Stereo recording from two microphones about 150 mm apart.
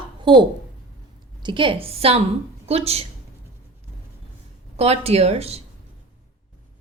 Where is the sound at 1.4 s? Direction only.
35° right (ahead or behind).